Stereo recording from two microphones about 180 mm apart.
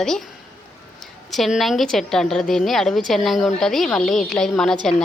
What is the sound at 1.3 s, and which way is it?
A woman's voice, centre (ahead or behind).